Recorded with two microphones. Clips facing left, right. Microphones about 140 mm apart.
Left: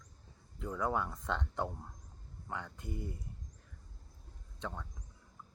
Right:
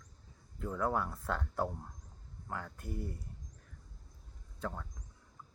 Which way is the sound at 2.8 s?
20° left (ahead or behind).